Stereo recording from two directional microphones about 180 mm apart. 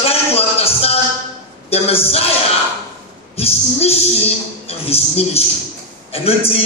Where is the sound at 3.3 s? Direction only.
35° left (ahead or behind).